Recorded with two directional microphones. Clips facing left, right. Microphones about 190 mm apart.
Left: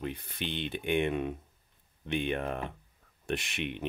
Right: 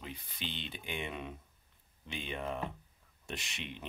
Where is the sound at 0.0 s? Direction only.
60° left (ahead or behind).